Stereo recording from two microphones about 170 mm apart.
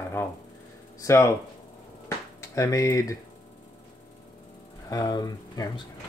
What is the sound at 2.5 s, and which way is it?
Speech, 20° left (ahead or behind).